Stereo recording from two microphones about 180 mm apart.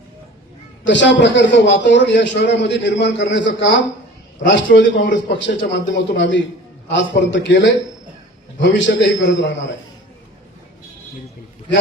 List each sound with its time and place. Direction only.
0.9 s a man's voice: 85° left